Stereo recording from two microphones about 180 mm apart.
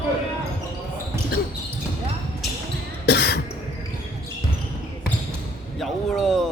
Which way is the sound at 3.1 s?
65° left (ahead or behind).